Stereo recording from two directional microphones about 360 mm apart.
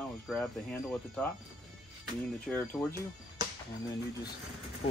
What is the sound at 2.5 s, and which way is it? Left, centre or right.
Speech, centre.